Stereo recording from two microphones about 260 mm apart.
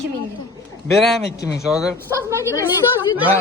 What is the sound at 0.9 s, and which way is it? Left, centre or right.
A woman's voice, centre.